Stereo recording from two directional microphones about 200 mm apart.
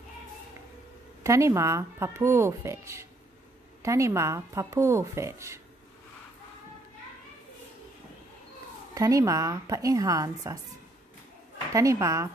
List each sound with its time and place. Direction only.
1.2 s speech: 15° right (ahead or behind)
8.9 s speech: 15° right (ahead or behind)
11.7 s speech: 15° right (ahead or behind)